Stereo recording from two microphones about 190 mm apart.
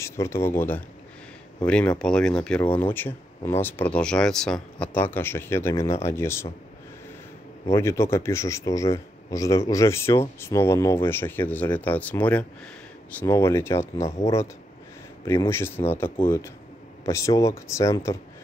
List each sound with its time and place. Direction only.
0.0 s speech: 15° left (ahead or behind)
7.7 s speech: 15° left (ahead or behind)
15.2 s speech: 15° left (ahead or behind)